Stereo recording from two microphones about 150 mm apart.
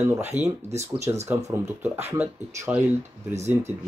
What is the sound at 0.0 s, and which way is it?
Speech, 15° right (ahead or behind).